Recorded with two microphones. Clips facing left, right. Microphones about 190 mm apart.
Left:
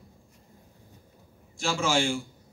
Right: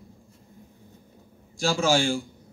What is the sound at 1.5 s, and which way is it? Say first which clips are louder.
Speech: right 4 dB; 35° right (ahead or behind).